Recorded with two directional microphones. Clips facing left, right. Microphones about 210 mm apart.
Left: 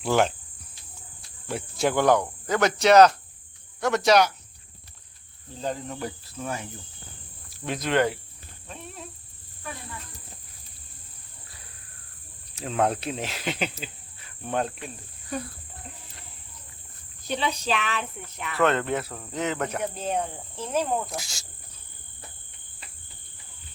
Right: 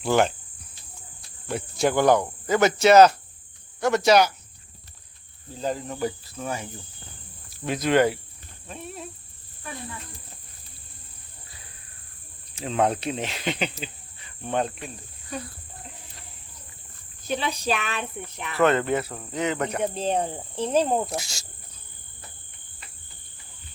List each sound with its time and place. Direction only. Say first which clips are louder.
0.0 s cricket: right 1 dB; centre (ahead or behind)
1.5 s cricket: right 2 dB; centre (ahead or behind)
5.5 s cricket: right 3 dB; centre (ahead or behind)
12.5 s speech: right 1 dB; centre (ahead or behind)
17.2 s a child's voice: right 1 dB; 10° right (ahead or behind)
18.6 s cricket: right 3 dB; 5° right (ahead or behind)
19.8 s speech: right 3 dB; 30° right (ahead or behind)
21.2 s cricket: right 3 dB; centre (ahead or behind)